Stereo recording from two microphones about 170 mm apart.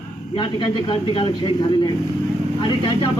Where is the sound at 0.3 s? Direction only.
30° left (ahead or behind).